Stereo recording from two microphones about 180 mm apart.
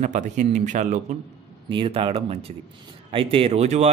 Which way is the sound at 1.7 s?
30° right (ahead or behind).